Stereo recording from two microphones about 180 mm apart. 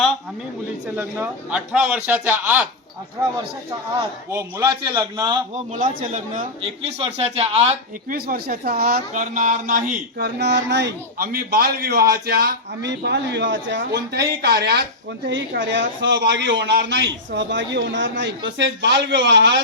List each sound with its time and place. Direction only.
0.9 s speech: 10° right (ahead or behind)
4.3 s a man's voice: 15° right (ahead or behind)
5.5 s a man's voice: 45° right (ahead or behind)
6.6 s a man's voice: 35° right (ahead or behind)
8.1 s speech: 55° right (ahead or behind)
15.3 s a man's voice: 90° right